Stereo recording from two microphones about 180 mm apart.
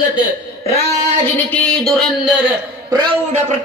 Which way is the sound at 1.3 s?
5° left (ahead or behind).